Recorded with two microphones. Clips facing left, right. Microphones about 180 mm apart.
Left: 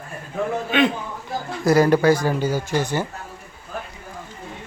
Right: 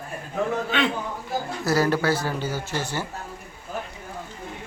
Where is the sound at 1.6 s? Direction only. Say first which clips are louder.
Left 7 dB; 15° left (ahead or behind).